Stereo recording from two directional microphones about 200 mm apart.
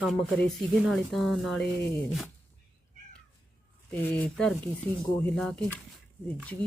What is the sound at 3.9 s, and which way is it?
Speech, 10° left (ahead or behind).